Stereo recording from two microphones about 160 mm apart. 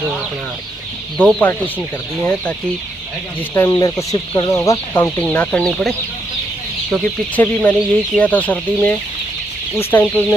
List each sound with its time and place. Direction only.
1.1 s speech: 10° left (ahead or behind)
3.5 s speech: 20° left (ahead or behind)